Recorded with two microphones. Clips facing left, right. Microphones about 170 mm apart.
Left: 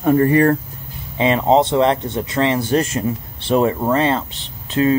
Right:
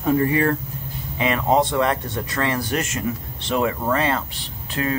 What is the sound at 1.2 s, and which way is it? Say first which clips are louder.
Speech: left 5 dB; 25° left (ahead or behind).